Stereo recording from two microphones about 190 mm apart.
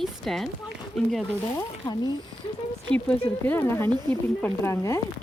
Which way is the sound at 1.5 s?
20° left (ahead or behind).